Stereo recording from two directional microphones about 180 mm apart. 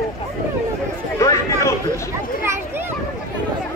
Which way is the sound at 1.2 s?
15° left (ahead or behind).